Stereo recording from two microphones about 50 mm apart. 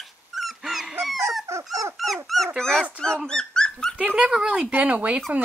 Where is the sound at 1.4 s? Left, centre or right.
Right.